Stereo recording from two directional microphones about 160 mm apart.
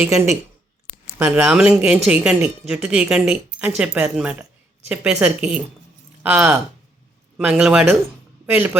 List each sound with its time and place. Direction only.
0.0 s speech: 20° right (ahead or behind)
1.2 s a woman's voice: 10° right (ahead or behind)